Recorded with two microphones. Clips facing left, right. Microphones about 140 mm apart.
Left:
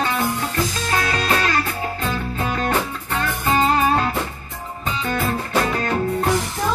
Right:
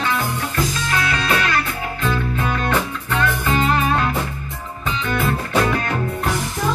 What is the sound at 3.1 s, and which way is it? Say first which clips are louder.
Music: right 1 dB; 35° left (ahead or behind).